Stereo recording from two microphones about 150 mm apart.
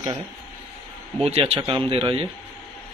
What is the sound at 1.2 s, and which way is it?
Speech, 40° right (ahead or behind).